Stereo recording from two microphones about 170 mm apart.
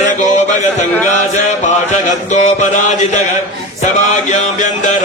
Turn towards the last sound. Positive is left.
turn(degrees=45)  # may be behind; listen again after turning